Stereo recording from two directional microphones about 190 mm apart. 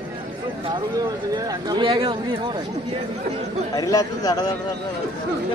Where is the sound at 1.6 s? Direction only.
25° right (ahead or behind).